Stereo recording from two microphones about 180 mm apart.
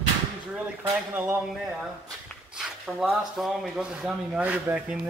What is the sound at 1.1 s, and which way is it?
Speech, 10° right (ahead or behind).